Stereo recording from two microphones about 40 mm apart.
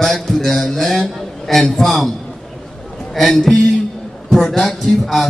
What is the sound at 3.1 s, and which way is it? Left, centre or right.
Speech, centre.